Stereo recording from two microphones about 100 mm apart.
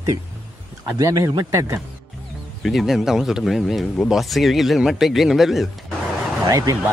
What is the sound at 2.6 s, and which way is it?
Speech, centre (ahead or behind).